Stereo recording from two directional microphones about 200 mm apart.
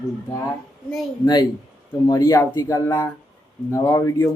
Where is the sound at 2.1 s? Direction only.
15° left (ahead or behind).